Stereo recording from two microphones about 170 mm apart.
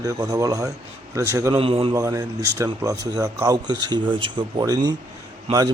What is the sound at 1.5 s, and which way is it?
Speech, 30° right (ahead or behind).